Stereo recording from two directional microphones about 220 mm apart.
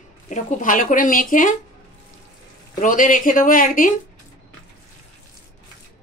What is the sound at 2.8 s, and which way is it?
A woman's voice, 35° left (ahead or behind).